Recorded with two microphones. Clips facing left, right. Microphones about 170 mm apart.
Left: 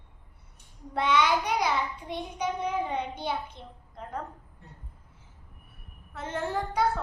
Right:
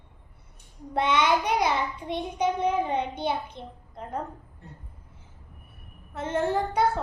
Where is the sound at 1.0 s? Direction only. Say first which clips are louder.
Right 2 dB; 20° right (ahead or behind).